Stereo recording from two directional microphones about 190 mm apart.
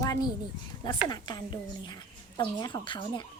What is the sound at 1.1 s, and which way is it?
A woman's voice, 25° left (ahead or behind).